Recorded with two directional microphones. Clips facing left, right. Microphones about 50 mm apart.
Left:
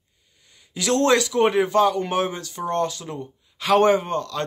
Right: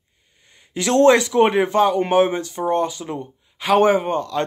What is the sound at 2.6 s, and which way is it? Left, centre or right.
Speech, centre.